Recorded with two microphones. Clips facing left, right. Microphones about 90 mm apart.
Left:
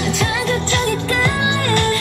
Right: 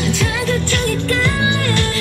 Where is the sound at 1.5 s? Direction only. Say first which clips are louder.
Left 2 dB; 30° left (ahead or behind).